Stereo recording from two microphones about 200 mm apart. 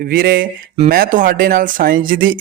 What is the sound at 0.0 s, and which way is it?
Speech, 45° right (ahead or behind).